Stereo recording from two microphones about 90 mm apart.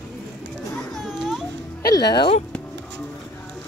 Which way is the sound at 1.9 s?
50° left (ahead or behind).